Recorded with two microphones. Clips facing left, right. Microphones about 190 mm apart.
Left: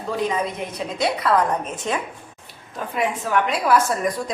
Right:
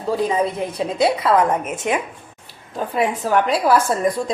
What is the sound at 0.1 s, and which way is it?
A woman's voice, 30° right (ahead or behind).